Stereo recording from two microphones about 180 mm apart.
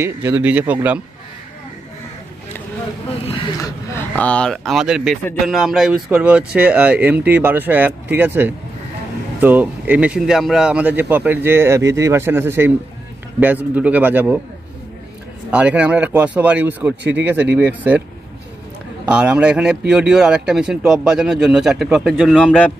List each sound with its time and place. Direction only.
0.0 s speech: 15° right (ahead or behind)
3.3 s speech: 25° left (ahead or behind)
3.9 s speech: 10° left (ahead or behind); by 14.4 s 10° right (ahead or behind)
15.5 s speech: 5° right (ahead or behind)
19.0 s speech: 5° right (ahead or behind)